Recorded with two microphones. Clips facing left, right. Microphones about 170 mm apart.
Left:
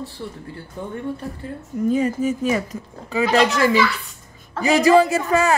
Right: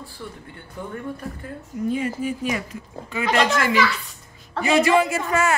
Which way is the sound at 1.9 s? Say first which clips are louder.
Left 5 dB; 40° left (ahead or behind).